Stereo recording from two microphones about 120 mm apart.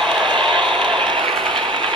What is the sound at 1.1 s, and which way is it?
Ratchet, 45° right (ahead or behind).